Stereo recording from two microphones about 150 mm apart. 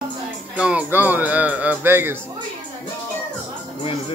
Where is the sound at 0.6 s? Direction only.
10° right (ahead or behind).